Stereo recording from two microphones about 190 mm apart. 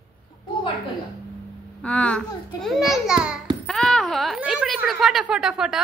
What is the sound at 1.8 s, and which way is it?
A child's voice, 5° left (ahead or behind).